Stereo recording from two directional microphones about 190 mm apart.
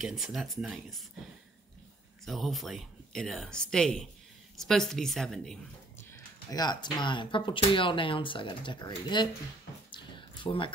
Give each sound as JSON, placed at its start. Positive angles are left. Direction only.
{"t": 0.0, "sound": "speech", "side_deg": 0}
{"t": 2.2, "sound": "speech", "side_deg": 0}
{"t": 6.1, "sound": "speech", "side_deg": 20}
{"t": 9.8, "sound": "a sound", "side_deg": 25}